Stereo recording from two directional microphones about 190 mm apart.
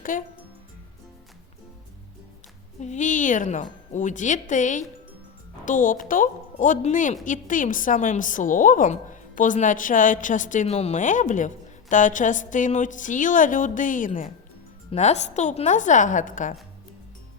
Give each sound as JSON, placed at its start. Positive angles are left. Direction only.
{"t": 0.0, "sound": "speech", "side_deg": 45}
{"t": 2.8, "sound": "a woman's voice", "side_deg": 40}